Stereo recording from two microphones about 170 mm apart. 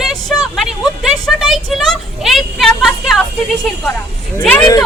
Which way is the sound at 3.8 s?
15° left (ahead or behind).